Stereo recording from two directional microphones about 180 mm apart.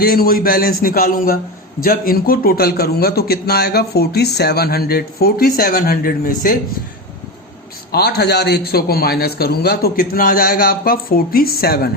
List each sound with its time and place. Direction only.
0.0 s a man's voice: 55° left (ahead or behind)
7.9 s a man's voice: 65° left (ahead or behind)